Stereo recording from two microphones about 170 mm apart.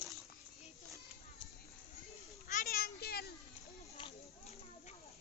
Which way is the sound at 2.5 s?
50° left (ahead or behind).